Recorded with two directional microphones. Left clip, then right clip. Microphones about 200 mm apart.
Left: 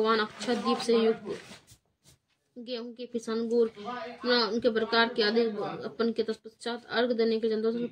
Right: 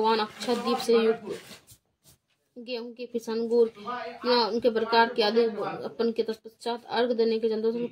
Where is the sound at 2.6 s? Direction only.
15° left (ahead or behind).